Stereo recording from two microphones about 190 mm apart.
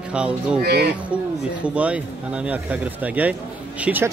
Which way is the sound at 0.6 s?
60° right (ahead or behind).